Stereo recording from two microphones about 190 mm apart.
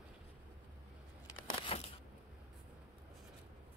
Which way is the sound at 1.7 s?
30° left (ahead or behind).